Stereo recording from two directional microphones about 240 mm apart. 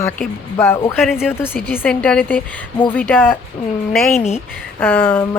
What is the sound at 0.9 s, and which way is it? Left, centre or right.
Speech, centre.